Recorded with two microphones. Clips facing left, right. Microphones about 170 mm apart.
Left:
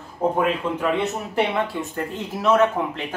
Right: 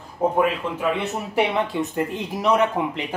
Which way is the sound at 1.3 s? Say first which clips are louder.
Right 3 dB; 20° right (ahead or behind).